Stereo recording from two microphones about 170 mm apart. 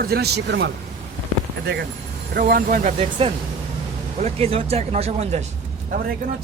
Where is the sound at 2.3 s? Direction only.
55° right (ahead or behind).